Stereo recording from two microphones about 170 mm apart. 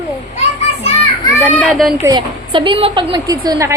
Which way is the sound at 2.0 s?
25° right (ahead or behind).